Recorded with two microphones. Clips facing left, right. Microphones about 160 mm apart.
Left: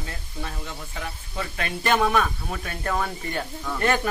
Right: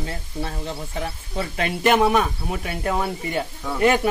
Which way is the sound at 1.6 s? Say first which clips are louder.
Right 5 dB; 15° right (ahead or behind).